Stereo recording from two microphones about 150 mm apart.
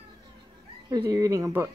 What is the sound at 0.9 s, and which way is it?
Speech, 25° right (ahead or behind).